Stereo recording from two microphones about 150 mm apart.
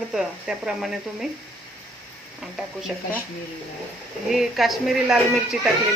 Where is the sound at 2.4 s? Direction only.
5° right (ahead or behind).